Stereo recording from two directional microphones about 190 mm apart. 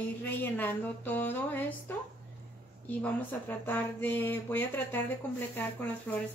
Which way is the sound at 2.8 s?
10° left (ahead or behind).